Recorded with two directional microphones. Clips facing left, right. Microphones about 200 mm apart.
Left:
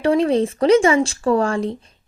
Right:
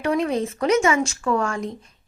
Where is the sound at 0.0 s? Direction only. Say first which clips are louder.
Left 6 dB; 30° left (ahead or behind).